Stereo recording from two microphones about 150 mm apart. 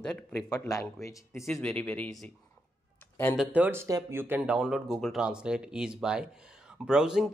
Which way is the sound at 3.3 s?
10° right (ahead or behind).